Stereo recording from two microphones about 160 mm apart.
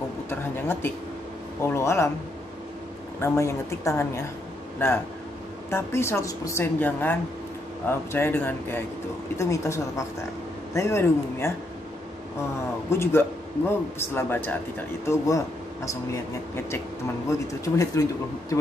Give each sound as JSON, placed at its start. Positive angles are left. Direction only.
{"t": 0.3, "sound": "a woman's voice", "side_deg": 15}
{"t": 3.2, "sound": "a woman's voice", "side_deg": 15}
{"t": 12.9, "sound": "a woman's voice", "side_deg": 15}